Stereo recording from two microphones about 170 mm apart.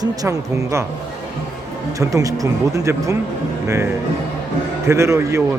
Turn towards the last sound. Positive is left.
turn(degrees=-15)  # may be behind; listen again after turning